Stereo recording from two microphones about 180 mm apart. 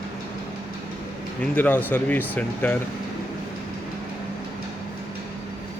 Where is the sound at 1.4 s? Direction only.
10° left (ahead or behind).